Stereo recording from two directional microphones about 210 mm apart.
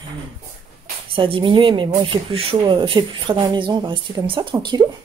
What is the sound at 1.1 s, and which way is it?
Speech, 25° right (ahead or behind).